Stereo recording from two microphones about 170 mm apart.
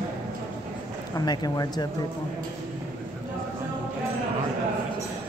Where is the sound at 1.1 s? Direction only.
25° left (ahead or behind).